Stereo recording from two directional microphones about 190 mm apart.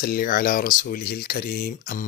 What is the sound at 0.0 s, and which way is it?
Speech, 50° left (ahead or behind).